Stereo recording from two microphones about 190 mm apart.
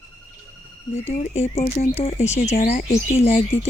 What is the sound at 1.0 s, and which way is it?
Speech, 35° left (ahead or behind).